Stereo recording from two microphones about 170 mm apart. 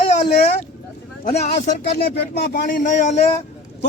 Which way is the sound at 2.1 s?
65° left (ahead or behind).